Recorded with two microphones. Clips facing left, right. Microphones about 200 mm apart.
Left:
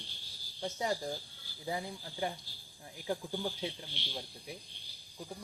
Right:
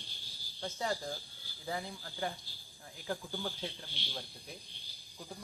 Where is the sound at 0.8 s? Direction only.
15° left (ahead or behind).